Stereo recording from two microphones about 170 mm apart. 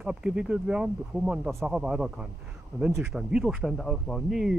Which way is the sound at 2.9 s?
15° right (ahead or behind).